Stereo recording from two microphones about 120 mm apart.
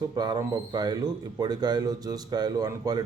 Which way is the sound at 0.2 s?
35° right (ahead or behind).